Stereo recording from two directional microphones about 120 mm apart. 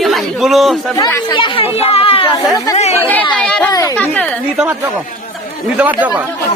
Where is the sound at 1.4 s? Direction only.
50° left (ahead or behind).